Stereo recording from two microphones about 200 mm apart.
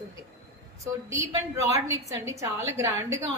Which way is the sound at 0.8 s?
15° right (ahead or behind).